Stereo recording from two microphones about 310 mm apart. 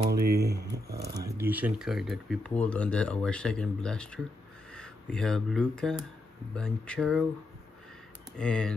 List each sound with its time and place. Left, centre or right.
0.0 s speech: right
1.1 s speech: centre
8.4 s speech: centre